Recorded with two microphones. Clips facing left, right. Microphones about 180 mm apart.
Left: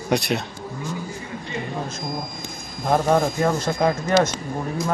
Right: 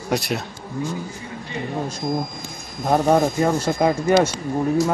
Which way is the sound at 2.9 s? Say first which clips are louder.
Right 2 dB; 5° right (ahead or behind).